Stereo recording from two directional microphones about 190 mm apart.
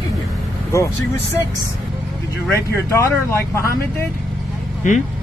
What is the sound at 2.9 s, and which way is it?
Speech, 15° left (ahead or behind).